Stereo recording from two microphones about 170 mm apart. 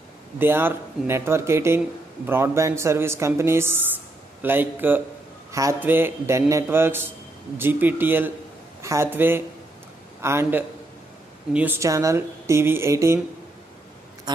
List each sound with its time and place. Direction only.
0.4 s speech: 10° right (ahead or behind)